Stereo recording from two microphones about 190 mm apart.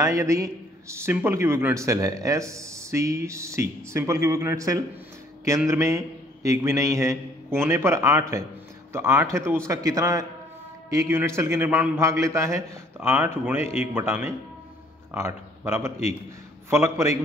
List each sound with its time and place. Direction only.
0.0 s a man's voice: 15° right (ahead or behind)
13.6 s speech: 35° left (ahead or behind)
13.9 s a man's voice: 10° right (ahead or behind)